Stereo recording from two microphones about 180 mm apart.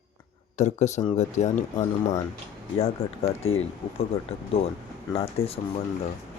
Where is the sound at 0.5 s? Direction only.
40° left (ahead or behind).